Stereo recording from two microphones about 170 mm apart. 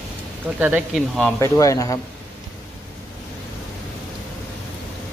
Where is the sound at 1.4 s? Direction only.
20° left (ahead or behind).